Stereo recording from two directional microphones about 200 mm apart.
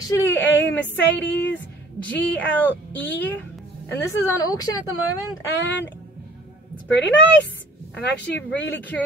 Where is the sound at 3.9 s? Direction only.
15° left (ahead or behind).